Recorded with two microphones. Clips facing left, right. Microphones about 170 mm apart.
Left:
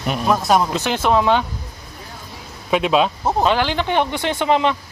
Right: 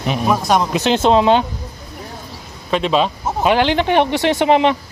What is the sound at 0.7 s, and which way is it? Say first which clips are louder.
Speech: right 4 dB; 20° right (ahead or behind).